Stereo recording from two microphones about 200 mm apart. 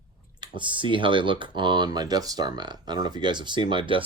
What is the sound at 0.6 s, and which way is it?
Speech, 25° right (ahead or behind).